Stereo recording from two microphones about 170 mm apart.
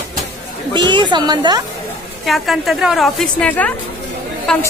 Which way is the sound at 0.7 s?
25° right (ahead or behind).